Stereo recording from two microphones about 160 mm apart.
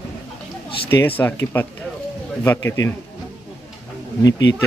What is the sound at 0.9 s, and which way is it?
Speech, 15° left (ahead or behind).